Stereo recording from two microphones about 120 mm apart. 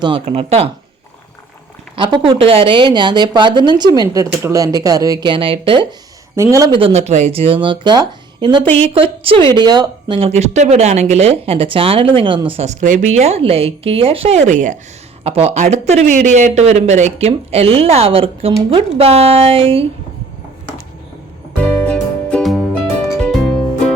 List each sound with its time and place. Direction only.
0.3 s speech: 55° right (ahead or behind)
2.0 s a woman's voice: 45° right (ahead or behind)
6.3 s a man's voice: 25° right (ahead or behind)
6.7 s speech: 45° right (ahead or behind)
7.0 s speech: 65° right (ahead or behind); by 8.6 s 40° right (ahead or behind)
8.9 s speech: 50° right (ahead or behind); by 10.2 s 35° right (ahead or behind)
10.2 s speech: 65° right (ahead or behind); by 12.6 s 45° right (ahead or behind)
12.6 s speech: 90° right
15.2 s speech: 60° right (ahead or behind)
21.6 s music: 10° left (ahead or behind)